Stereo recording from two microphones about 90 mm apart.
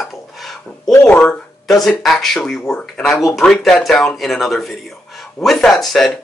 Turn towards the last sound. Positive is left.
turn(degrees=0)  # may be behind; listen again after turning